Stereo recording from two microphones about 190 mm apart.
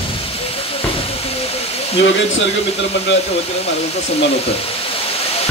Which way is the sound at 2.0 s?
75° left (ahead or behind).